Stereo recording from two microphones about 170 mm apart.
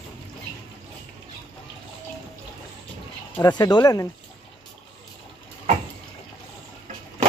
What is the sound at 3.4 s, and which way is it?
Speech, 25° left (ahead or behind).